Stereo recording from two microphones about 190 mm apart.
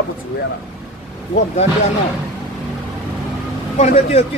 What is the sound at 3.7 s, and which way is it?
Speech, 35° left (ahead or behind).